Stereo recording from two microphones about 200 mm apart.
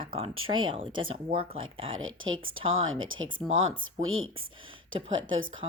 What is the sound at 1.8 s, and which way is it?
Speech, 80° right.